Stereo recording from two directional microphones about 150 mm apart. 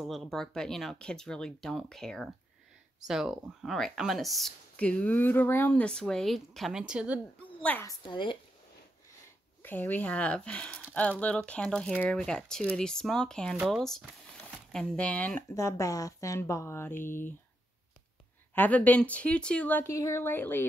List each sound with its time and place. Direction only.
0.0 s speech: centre (ahead or behind)
7.8 s a woman's voice: 30° left (ahead or behind)
9.6 s speech: 10° left (ahead or behind)
18.5 s speech: 10° left (ahead or behind)